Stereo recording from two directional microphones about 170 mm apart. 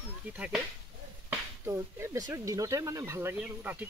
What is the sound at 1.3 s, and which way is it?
Speech, 15° right (ahead or behind).